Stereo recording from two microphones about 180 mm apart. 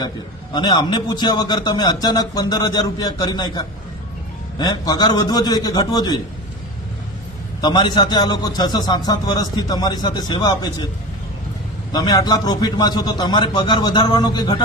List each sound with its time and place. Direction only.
0.5 s a man's voice: 25° left (ahead or behind)
7.6 s a man's voice: 25° left (ahead or behind)
11.9 s a man's voice: 20° left (ahead or behind)